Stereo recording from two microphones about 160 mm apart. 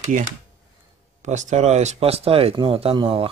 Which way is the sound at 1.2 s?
50° right (ahead or behind).